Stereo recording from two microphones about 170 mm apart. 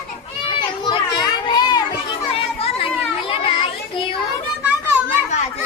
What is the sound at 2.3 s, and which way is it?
Children playing, 35° left (ahead or behind).